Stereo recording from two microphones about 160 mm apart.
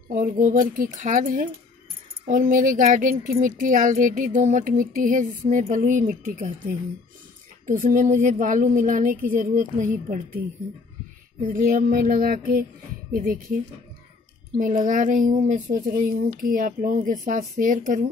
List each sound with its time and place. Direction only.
0.1 s speech: 60° right (ahead or behind)
11.4 s speech: 60° right (ahead or behind)
14.6 s speech: 55° right (ahead or behind)